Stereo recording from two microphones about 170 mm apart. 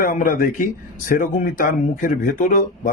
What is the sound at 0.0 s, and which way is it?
Speech, 50° left (ahead or behind).